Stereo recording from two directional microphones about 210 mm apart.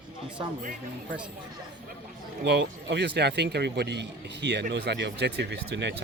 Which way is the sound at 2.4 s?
55° right (ahead or behind).